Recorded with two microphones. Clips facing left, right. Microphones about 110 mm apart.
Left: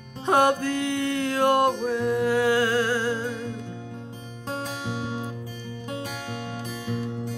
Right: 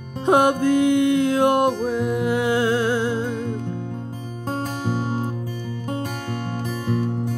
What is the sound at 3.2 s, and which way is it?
Music, 50° right (ahead or behind).